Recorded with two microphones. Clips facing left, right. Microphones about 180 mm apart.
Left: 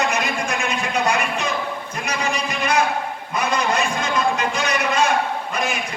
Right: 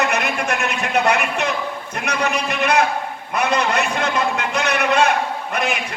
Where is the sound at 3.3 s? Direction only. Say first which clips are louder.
Right 2 dB; 65° right (ahead or behind).